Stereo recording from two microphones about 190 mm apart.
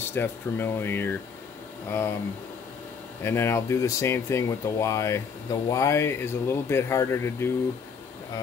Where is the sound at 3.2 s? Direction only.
10° left (ahead or behind).